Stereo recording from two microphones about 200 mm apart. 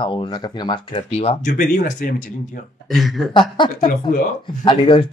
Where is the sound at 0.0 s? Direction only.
25° left (ahead or behind); by 2.6 s 40° left (ahead or behind).